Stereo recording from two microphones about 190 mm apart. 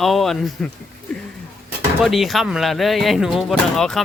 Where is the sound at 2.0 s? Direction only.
Centre (ahead or behind).